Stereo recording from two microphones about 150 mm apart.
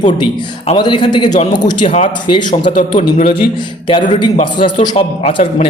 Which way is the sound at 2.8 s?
60° left (ahead or behind).